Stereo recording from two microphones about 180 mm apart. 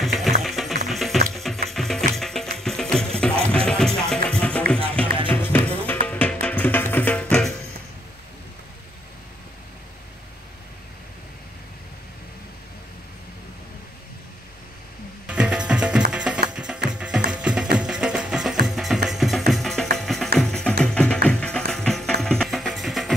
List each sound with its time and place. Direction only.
0.0 s music: centre (ahead or behind)
15.2 s music: 5° right (ahead or behind)